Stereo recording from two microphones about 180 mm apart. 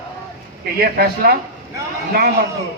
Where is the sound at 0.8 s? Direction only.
55° right (ahead or behind).